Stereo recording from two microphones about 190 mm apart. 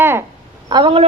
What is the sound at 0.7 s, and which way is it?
Speech, 25° right (ahead or behind).